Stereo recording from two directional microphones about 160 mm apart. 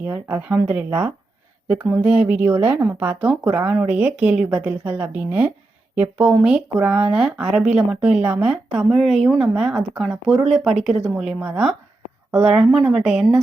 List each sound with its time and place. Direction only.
0.0 s speech: 10° right (ahead or behind)